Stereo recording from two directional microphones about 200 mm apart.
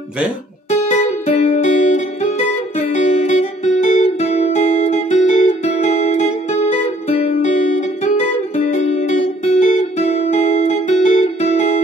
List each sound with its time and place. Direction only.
0.9 s music: 30° left (ahead or behind)